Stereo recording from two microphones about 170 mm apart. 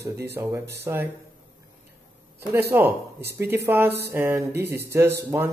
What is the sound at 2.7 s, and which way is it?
Speech, 15° right (ahead or behind).